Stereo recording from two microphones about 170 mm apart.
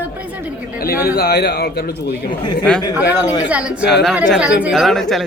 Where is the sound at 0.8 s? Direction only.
60° left (ahead or behind).